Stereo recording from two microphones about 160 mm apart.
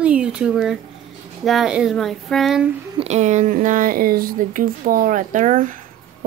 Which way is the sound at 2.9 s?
45° right (ahead or behind).